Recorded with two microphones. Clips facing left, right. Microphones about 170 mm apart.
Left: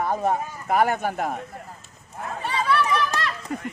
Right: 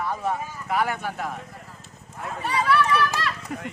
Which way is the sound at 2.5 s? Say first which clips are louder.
Right 1 dB; 20° left (ahead or behind).